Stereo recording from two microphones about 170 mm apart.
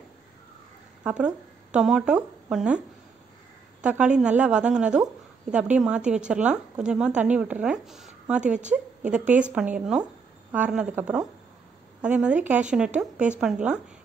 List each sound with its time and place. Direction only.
1.0 s speech: 5° right (ahead or behind)
3.8 s a woman's voice: 5° right (ahead or behind)